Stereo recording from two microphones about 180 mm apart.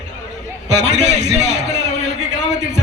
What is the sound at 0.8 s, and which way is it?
Speech, 40° right (ahead or behind).